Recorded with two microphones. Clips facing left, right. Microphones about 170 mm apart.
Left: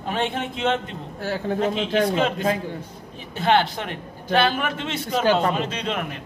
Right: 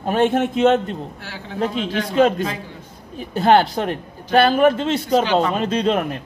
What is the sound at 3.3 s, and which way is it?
A man's voice, 40° right (ahead or behind).